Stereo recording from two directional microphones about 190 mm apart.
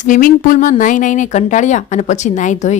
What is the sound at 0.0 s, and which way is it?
Speech, 45° left (ahead or behind).